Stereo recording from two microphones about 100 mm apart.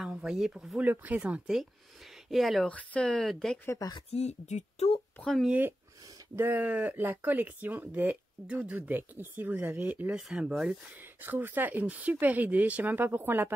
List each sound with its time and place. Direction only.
0.0 s speech: 5° right (ahead or behind)
0.7 s speech: 15° right (ahead or behind)
2.2 s speech: centre (ahead or behind)
2.6 s speech: 15° left (ahead or behind)
4.1 s speech: 90° left
5.4 s speech: 15° right (ahead or behind)
11.2 s speech: 20° right (ahead or behind)